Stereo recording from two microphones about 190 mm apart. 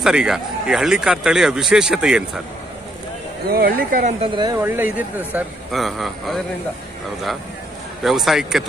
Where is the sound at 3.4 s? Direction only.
50° right (ahead or behind).